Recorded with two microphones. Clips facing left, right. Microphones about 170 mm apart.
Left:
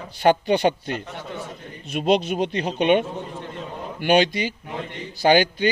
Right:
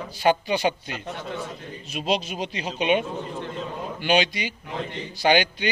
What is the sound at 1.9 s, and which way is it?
Speech, 60° left (ahead or behind).